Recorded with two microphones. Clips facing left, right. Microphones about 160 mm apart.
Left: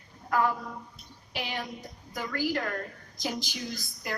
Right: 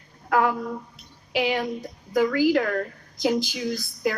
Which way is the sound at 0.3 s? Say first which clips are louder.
Right 5 dB; 75° right (ahead or behind).